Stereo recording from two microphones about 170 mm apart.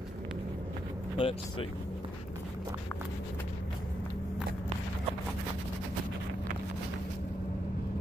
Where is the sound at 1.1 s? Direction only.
30° left (ahead or behind).